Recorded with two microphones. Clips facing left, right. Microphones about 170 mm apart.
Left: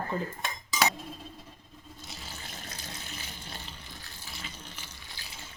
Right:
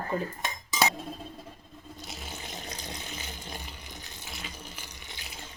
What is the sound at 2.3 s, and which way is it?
Water tap, 20° right (ahead or behind).